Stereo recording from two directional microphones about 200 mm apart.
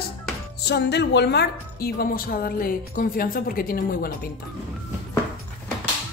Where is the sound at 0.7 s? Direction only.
55° left (ahead or behind).